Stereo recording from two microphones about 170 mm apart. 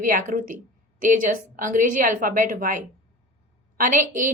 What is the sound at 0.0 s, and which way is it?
Speech, 50° right (ahead or behind).